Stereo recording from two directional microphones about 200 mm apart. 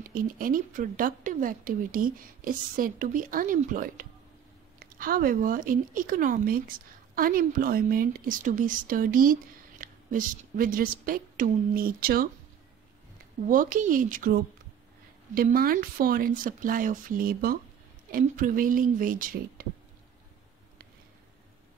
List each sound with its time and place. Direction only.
0.0 s a woman's voice: 45° right (ahead or behind)
13.5 s a woman's voice: 40° right (ahead or behind)